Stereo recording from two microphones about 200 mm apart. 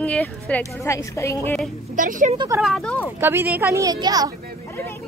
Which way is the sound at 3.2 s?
10° right (ahead or behind).